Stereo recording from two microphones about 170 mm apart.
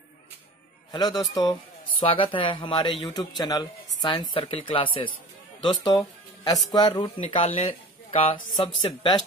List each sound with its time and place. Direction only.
0.9 s speech: 25° left (ahead or behind)
6.4 s speech: 25° left (ahead or behind)